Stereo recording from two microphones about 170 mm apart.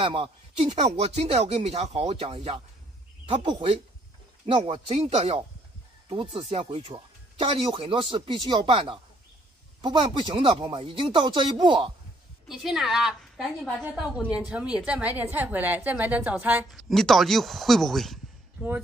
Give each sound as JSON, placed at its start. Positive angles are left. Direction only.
{"t": 0.0, "sound": "speech", "side_deg": -30}
{"t": 12.4, "sound": "a woman's voice", "side_deg": 0}
{"t": 16.9, "sound": "a woman's voice", "side_deg": 0}